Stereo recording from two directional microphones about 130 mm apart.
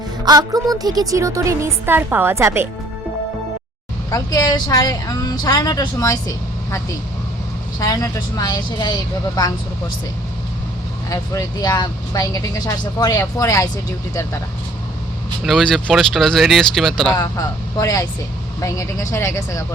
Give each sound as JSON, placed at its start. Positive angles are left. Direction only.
{"t": 0.3, "sound": "a woman's voice", "side_deg": -30}
{"t": 4.1, "sound": "speech", "side_deg": 30}
{"t": 11.1, "sound": "speech", "side_deg": 30}
{"t": 15.4, "sound": "speech", "side_deg": 0}
{"t": 17.2, "sound": "speech", "side_deg": 25}